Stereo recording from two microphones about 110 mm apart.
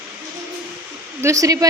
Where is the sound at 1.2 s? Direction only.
30° right (ahead or behind).